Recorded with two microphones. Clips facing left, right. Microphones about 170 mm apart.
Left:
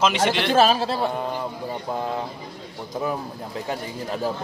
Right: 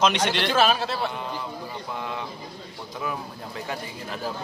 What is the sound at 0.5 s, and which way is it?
A man's voice, 35° left (ahead or behind).